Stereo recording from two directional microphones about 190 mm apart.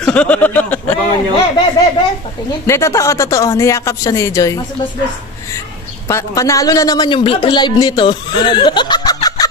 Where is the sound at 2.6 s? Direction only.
15° left (ahead or behind).